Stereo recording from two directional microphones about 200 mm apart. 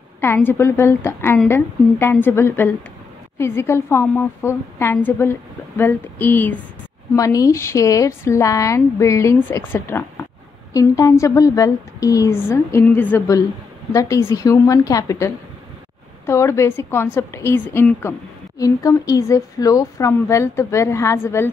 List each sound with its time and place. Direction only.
0.2 s a woman's voice: 10° left (ahead or behind)